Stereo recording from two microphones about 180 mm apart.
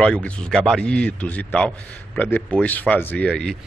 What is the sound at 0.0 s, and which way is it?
A man's voice, 5° left (ahead or behind).